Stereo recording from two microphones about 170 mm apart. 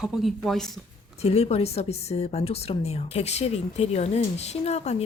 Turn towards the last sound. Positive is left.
turn(degrees=40)  # may be behind; listen again after turning